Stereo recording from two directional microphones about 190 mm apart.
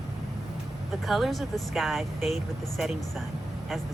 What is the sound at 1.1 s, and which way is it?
Speech, centre (ahead or behind).